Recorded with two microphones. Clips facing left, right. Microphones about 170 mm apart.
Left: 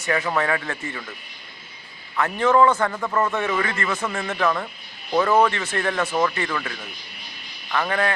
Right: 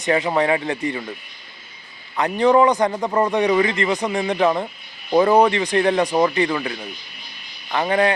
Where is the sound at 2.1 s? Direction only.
15° right (ahead or behind).